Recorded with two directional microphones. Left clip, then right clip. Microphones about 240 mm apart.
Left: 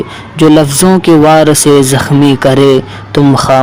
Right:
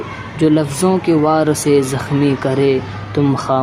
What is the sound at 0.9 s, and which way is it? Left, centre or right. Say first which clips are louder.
Speech: left 9 dB; left.